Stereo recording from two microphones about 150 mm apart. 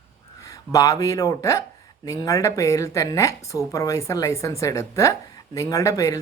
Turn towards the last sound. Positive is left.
turn(degrees=20)  # may be behind; listen again after turning